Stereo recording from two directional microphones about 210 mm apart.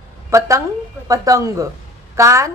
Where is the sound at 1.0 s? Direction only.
15° right (ahead or behind).